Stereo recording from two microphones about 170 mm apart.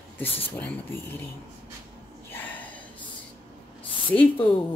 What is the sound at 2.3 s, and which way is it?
Gasp, 10° left (ahead or behind).